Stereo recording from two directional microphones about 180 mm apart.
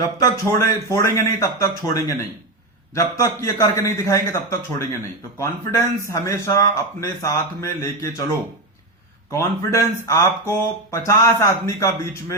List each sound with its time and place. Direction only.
0.0 s speech: 20° left (ahead or behind)
9.3 s speech: 15° left (ahead or behind)